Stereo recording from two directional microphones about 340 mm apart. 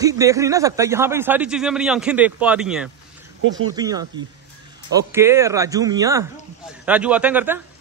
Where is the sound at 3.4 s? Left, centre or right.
Right.